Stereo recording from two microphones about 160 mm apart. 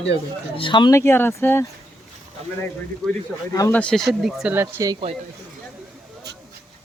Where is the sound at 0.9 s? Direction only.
15° left (ahead or behind).